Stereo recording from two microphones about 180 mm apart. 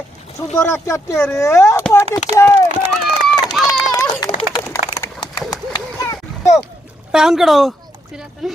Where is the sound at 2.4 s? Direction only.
15° left (ahead or behind).